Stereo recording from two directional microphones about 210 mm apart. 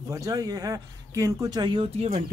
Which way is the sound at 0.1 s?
15° right (ahead or behind).